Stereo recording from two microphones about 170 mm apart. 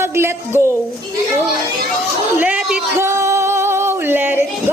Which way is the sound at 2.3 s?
10° right (ahead or behind).